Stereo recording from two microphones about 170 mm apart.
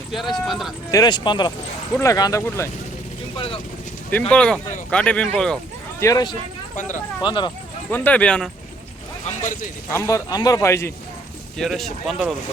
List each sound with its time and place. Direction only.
0.1 s speech: centre (ahead or behind)
0.9 s a man's voice: 20° left (ahead or behind)
3.3 s speech: 35° left (ahead or behind)
4.3 s speech: 5° left (ahead or behind)
6.0 s speech: 20° left (ahead or behind)
7.9 s a man's voice: 10° left (ahead or behind)
9.2 s speech: 45° left (ahead or behind)
9.9 s a man's voice: 15° left (ahead or behind)
11.5 s speech: centre (ahead or behind)